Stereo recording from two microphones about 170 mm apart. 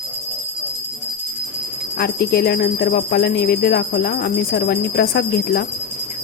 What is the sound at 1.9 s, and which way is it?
Speech, 70° left (ahead or behind).